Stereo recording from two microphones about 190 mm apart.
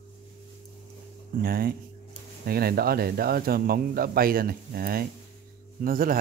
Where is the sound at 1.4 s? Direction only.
50° right (ahead or behind).